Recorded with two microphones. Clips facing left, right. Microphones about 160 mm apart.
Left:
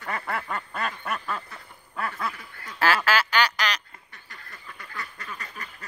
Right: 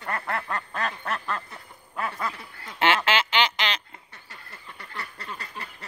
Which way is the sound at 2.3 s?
25° right (ahead or behind).